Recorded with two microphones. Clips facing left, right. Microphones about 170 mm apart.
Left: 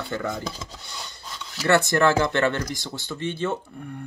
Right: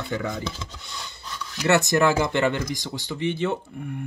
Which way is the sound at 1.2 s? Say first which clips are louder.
Right 2 dB; 20° left (ahead or behind).